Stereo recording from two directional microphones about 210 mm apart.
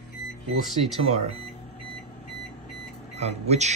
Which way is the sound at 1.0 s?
30° right (ahead or behind).